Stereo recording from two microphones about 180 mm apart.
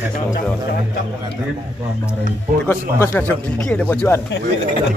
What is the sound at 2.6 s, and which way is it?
Speech, 15° left (ahead or behind).